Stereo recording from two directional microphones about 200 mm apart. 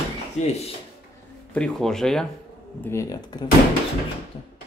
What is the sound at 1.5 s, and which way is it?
Speech, 5° left (ahead or behind).